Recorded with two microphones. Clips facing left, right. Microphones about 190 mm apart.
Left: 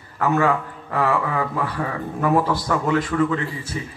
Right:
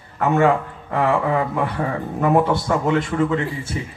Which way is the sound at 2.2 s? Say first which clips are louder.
Right 2 dB; 25° right (ahead or behind).